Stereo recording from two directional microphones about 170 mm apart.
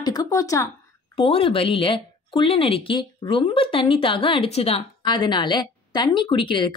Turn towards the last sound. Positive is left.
turn(degrees=30)  # may be behind; listen again after turning